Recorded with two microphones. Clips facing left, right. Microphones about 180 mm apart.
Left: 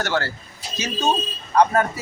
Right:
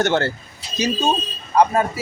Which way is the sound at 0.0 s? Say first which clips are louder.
Right 5 dB; 20° right (ahead or behind).